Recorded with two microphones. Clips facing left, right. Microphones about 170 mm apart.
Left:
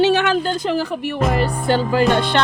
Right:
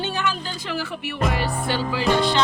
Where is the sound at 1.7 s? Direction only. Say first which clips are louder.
Left 6 dB; 50° left (ahead or behind).